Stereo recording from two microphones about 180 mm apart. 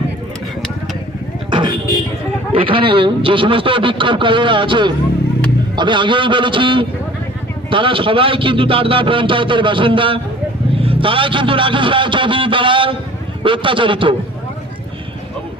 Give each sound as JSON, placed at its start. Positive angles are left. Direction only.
{"t": 1.5, "sound": "vehicle", "side_deg": -25}
{"t": 2.5, "sound": "a man's voice", "side_deg": -30}